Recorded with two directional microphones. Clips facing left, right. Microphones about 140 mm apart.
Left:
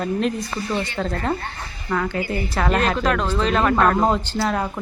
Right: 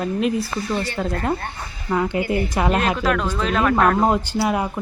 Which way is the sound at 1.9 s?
15° right (ahead or behind).